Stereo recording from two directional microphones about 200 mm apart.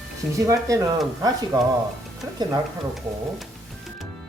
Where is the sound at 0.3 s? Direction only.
15° right (ahead or behind).